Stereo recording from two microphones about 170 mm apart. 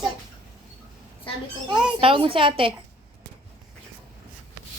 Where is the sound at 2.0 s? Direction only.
30° right (ahead or behind).